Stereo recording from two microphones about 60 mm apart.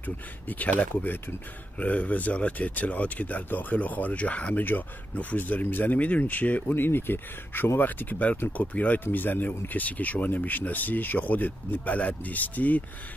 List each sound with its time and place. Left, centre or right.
0.0 s speech: left